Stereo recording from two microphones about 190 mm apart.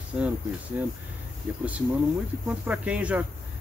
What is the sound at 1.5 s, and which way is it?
Speech, 10° right (ahead or behind).